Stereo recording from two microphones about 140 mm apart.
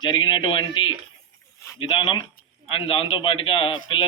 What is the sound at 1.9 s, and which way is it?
A man's voice, 35° left (ahead or behind).